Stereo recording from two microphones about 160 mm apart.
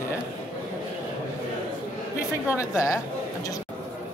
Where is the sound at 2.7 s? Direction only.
20° left (ahead or behind).